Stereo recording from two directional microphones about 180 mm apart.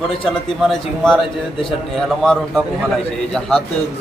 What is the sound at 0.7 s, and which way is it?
Speech, 5° left (ahead or behind).